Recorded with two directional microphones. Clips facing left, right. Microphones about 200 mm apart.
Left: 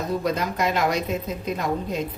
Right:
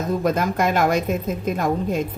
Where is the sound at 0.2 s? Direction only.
50° right (ahead or behind).